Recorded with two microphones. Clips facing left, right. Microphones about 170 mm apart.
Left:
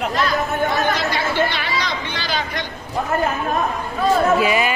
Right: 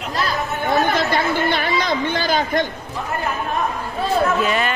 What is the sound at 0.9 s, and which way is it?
Chatter, 50° right (ahead or behind).